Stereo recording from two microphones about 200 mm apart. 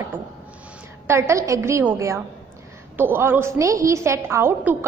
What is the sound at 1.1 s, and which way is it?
A woman's voice, 15° right (ahead or behind).